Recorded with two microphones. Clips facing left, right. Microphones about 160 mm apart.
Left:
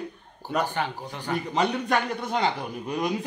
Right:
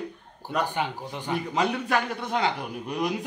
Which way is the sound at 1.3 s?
5° right (ahead or behind).